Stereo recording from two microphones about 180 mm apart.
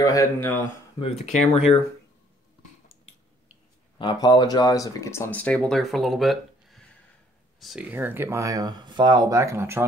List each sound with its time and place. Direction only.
0.0 s speech: 20° left (ahead or behind)
1.2 s speech: 35° left (ahead or behind)
4.0 s speech: 25° left (ahead or behind); by 9.8 s 15° right (ahead or behind)